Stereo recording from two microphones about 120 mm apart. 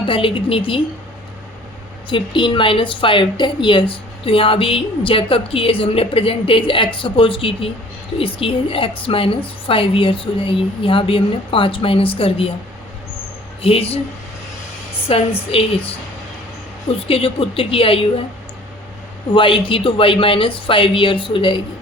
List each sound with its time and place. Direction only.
0.0 s a woman's voice: 45° left (ahead or behind)
2.0 s a woman's voice: 45° left (ahead or behind)
13.6 s speech: 55° left (ahead or behind)
15.1 s a woman's voice: 55° left (ahead or behind)
17.1 s a woman's voice: 50° left (ahead or behind)
19.3 s a woman's voice: 45° left (ahead or behind)